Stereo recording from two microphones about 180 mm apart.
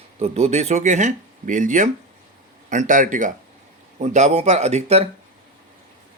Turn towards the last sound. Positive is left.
turn(degrees=-35)  # may be behind; listen again after turning